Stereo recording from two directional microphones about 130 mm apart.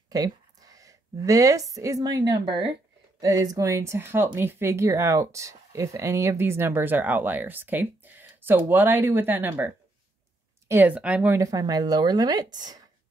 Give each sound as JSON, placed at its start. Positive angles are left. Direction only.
{"t": 0.1, "sound": "a woman's voice", "side_deg": -30}
{"t": 11.3, "sound": "speech", "side_deg": -25}